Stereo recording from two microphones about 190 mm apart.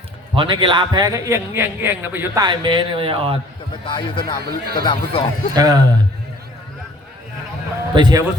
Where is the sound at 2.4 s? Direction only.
25° right (ahead or behind).